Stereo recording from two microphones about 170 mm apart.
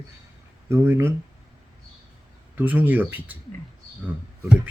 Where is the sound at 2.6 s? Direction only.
10° right (ahead or behind).